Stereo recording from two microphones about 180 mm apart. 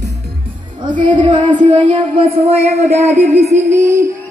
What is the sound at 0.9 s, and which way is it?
Speech, 45° right (ahead or behind).